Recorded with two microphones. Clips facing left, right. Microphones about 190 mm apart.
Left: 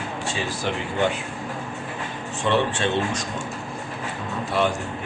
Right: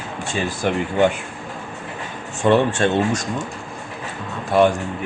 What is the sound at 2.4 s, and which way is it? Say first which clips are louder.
Speech: right 6 dB; 45° right (ahead or behind).